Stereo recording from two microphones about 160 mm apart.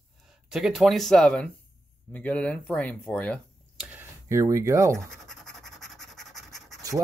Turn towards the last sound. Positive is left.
turn(degrees=-20)  # may be behind; listen again after turning